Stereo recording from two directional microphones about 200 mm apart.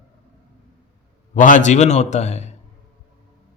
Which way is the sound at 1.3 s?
40° left (ahead or behind).